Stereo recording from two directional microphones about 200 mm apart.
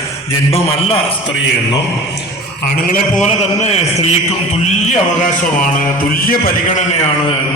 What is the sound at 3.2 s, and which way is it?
Speech, 30° left (ahead or behind).